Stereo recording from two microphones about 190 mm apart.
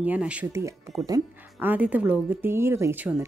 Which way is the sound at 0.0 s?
5° right (ahead or behind).